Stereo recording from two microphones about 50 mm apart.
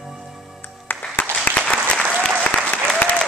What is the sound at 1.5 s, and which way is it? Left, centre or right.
Applause, left.